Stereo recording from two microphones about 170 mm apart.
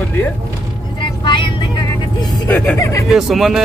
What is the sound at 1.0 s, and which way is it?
Vehicle, 30° left (ahead or behind).